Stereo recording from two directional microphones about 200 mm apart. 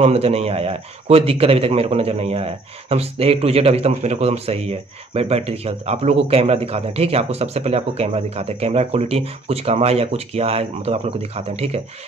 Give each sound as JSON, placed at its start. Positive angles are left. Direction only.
{"t": 0.0, "sound": "a man's voice", "side_deg": -30}